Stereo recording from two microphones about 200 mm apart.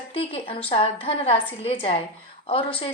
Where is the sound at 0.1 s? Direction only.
30° left (ahead or behind).